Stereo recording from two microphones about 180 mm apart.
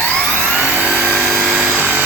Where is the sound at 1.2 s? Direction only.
Centre (ahead or behind).